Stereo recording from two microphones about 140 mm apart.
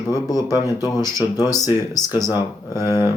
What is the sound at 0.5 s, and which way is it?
Speech, 25° left (ahead or behind).